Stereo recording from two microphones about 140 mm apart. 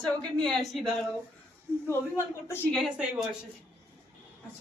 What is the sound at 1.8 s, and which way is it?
Speech, 20° left (ahead or behind).